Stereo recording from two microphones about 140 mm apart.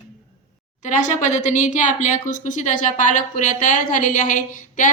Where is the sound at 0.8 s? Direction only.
60° left (ahead or behind).